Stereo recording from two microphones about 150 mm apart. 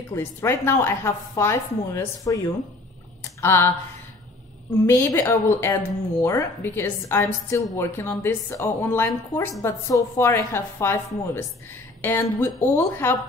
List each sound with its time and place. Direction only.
0.1 s a woman's voice: 15° left (ahead or behind)
4.8 s a woman's voice: 15° left (ahead or behind)